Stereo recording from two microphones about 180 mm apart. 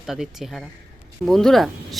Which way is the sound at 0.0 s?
Centre (ahead or behind).